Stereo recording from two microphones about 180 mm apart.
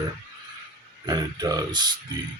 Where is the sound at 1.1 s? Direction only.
20° right (ahead or behind).